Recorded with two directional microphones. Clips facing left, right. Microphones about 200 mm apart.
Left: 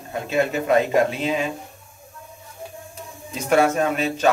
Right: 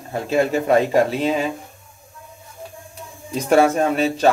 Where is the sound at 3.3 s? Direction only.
35° right (ahead or behind).